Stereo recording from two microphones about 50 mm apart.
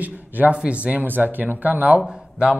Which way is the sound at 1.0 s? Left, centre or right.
Right.